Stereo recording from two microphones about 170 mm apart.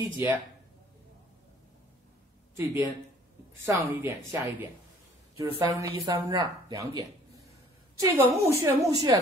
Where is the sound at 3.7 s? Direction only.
15° right (ahead or behind).